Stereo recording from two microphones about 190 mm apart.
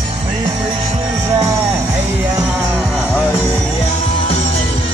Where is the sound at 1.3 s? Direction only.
15° right (ahead or behind).